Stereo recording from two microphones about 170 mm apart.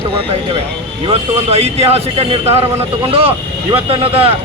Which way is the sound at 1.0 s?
35° right (ahead or behind).